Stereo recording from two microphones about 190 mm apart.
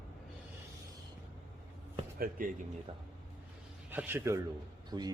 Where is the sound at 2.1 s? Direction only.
50° right (ahead or behind).